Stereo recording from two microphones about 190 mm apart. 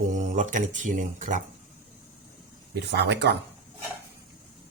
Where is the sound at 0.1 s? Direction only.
40° right (ahead or behind).